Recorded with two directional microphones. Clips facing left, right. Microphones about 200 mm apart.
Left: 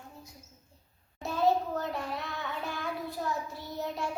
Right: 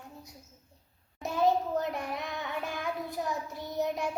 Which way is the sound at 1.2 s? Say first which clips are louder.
Even; 20° right (ahead or behind).